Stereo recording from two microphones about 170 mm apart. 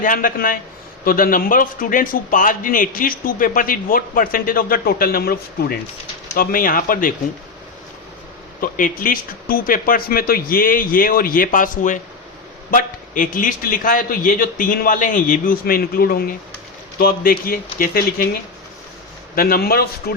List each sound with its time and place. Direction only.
0.0 s a man's voice: 55° left (ahead or behind)
8.6 s a man's voice: 55° left (ahead or behind)
19.4 s a man's voice: 60° left (ahead or behind)